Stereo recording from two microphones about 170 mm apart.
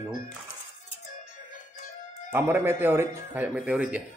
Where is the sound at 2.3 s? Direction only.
15° right (ahead or behind).